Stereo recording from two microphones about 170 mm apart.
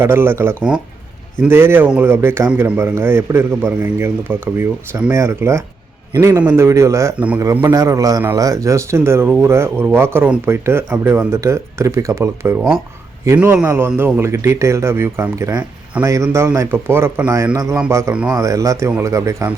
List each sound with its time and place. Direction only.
0.0 s a man's voice: 15° right (ahead or behind)
18.3 s a man's voice: 20° right (ahead or behind)